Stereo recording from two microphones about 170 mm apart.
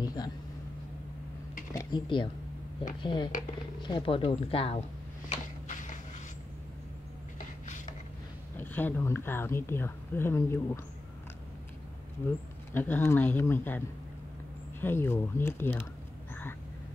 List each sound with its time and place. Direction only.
0.0 s speech: 25° left (ahead or behind)
1.7 s speech: 20° left (ahead or behind)
5.7 s a sound: 45° left (ahead or behind)
7.3 s a sound: 45° left (ahead or behind)
8.5 s speech: 10° left (ahead or behind)
12.7 s speech: 10° left (ahead or behind)